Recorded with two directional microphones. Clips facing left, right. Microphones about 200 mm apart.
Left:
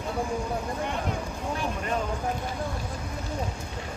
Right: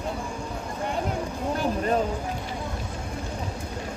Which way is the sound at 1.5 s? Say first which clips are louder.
Right 6 dB; 35° right (ahead or behind).